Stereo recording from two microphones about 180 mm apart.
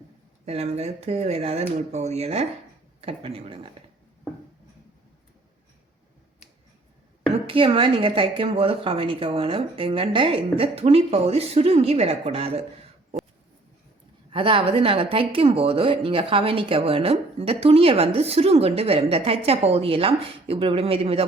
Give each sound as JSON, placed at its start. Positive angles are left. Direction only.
{"t": 0.4, "sound": "speech", "side_deg": -35}
{"t": 7.3, "sound": "speech", "side_deg": -30}
{"t": 14.3, "sound": "speech", "side_deg": -30}